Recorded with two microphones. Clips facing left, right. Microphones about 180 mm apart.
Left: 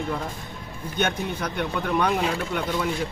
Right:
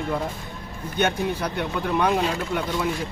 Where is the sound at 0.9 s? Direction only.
10° right (ahead or behind).